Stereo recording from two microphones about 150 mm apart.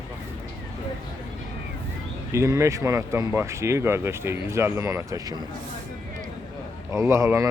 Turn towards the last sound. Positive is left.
turn(degrees=-20)  # may be behind; listen again after turning